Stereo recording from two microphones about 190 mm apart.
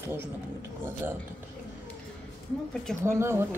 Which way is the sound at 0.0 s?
10° right (ahead or behind).